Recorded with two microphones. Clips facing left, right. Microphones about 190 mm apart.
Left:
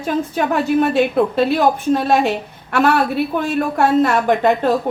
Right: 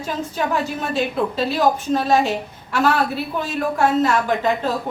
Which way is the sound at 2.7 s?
60° left (ahead or behind).